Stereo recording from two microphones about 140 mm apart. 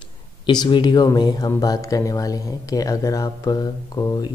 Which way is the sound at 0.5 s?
30° left (ahead or behind).